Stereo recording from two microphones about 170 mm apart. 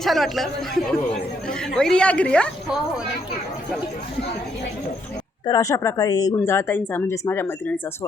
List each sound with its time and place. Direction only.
0.0 s a woman's voice: centre (ahead or behind)
5.5 s speech: 20° left (ahead or behind)